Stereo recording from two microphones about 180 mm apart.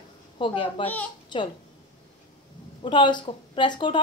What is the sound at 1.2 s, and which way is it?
Babbling, 25° left (ahead or behind).